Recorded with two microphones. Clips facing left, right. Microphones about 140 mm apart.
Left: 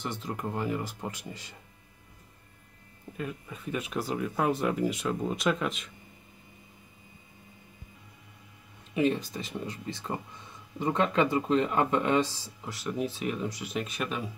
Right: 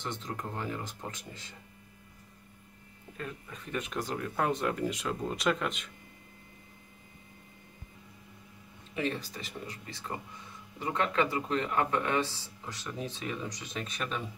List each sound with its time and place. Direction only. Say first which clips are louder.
0.0 s speech: left 3 dB; 10° left (ahead or behind)
3.2 s speech: left 4 dB; 10° left (ahead or behind)
8.9 s speech: left 7 dB; 15° left (ahead or behind)